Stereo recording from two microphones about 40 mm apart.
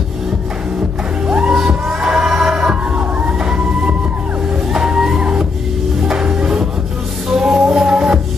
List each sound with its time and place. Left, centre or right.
1.2 s music: right
1.9 s a sound: centre
2.7 s music: right